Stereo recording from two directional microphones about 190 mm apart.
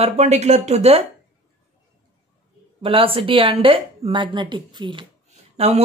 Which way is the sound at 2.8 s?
30° right (ahead or behind).